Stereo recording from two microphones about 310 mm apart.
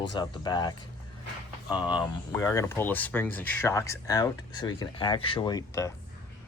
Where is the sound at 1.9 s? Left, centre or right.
Centre.